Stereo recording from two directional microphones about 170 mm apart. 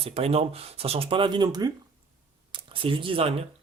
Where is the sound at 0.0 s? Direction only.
35° right (ahead or behind).